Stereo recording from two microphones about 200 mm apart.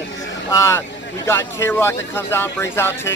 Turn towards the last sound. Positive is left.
turn(degrees=10)  # may be behind; listen again after turning